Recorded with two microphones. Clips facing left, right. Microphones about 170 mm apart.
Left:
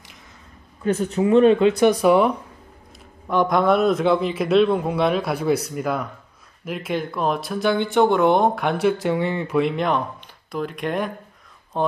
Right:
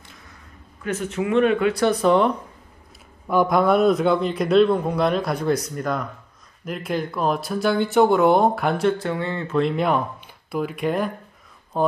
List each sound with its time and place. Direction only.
0.8 s speech: 35° left (ahead or behind); by 2.3 s 10° left (ahead or behind)
3.3 s speech: 5° right (ahead or behind)
8.9 s speech: 15° left (ahead or behind)
9.6 s speech: centre (ahead or behind)